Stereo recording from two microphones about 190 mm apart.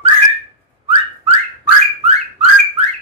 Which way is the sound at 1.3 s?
30° right (ahead or behind).